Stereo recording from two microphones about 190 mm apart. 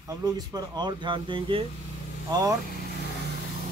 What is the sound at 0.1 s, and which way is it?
Speech, 20° right (ahead or behind).